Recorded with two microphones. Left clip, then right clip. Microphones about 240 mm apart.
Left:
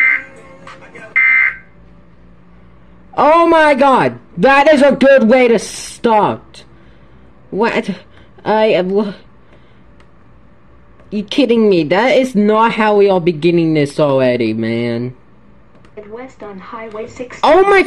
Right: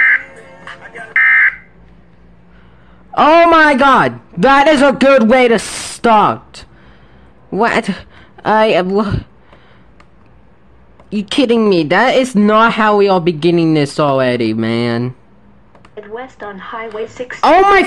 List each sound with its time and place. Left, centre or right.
0.1 s music: left
3.4 s a man's voice: centre
11.1 s a man's voice: centre
15.9 s speech: left
17.4 s a man's voice: centre